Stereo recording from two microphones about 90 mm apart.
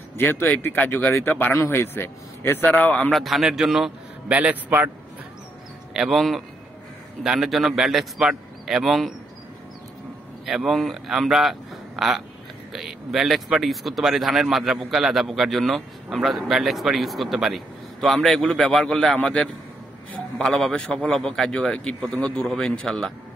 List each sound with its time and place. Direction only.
0.2 s a man's voice: 20° left (ahead or behind)
3.1 s speech: centre (ahead or behind)
4.3 s a man's voice: 15° right (ahead or behind)
5.9 s speech: 5° right (ahead or behind)
10.4 s a man's voice: centre (ahead or behind)